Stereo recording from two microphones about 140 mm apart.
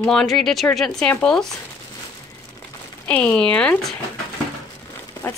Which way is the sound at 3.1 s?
10° left (ahead or behind).